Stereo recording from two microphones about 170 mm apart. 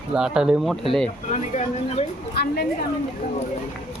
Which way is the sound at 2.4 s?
70° left (ahead or behind).